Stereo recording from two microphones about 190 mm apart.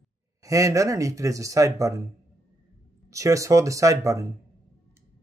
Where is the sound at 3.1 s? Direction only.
15° right (ahead or behind).